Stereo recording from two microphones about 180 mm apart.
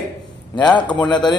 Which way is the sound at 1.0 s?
25° left (ahead or behind).